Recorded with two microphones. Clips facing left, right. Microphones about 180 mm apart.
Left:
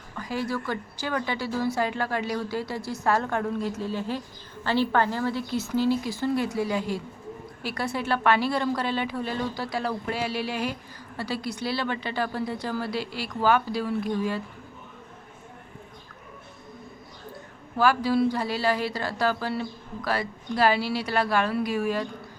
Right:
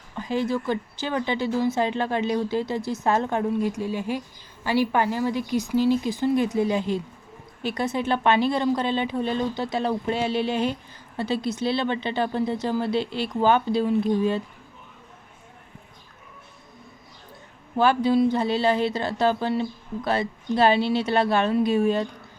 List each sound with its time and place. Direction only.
0.2 s a woman's voice: 20° right (ahead or behind)
17.7 s speech: 20° right (ahead or behind)